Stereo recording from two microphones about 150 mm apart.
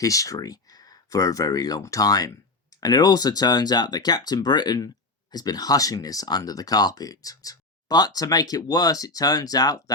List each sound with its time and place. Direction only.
0.0 s speech: 20° left (ahead or behind)